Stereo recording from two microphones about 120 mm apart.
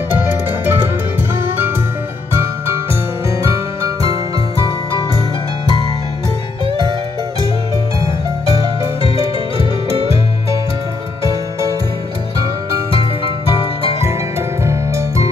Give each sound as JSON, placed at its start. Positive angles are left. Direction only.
{"t": 0.1, "sound": "music", "side_deg": -15}
{"t": 14.6, "sound": "music", "side_deg": -25}